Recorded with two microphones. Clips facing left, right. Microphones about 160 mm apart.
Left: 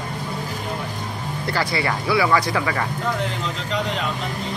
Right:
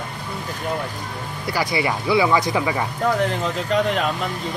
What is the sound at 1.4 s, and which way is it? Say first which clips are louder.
Speech: right 1 dB; 15° right (ahead or behind).